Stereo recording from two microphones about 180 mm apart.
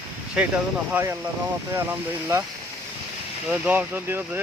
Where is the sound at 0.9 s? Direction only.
15° right (ahead or behind).